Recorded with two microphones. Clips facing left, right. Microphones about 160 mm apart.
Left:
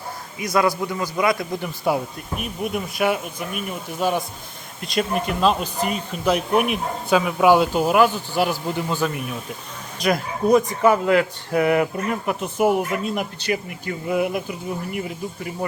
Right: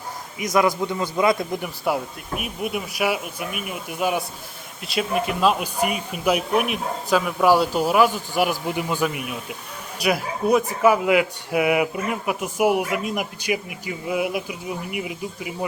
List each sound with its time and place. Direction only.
0.3 s a man's voice: 20° right (ahead or behind)
1.6 s speech: 5° right (ahead or behind)